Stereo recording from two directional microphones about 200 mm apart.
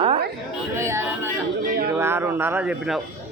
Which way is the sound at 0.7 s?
15° right (ahead or behind).